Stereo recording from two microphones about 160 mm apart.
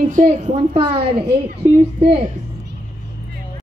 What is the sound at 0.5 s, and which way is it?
Speech, 35° right (ahead or behind).